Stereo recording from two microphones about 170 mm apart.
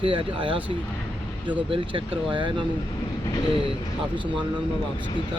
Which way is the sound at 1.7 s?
30° right (ahead or behind).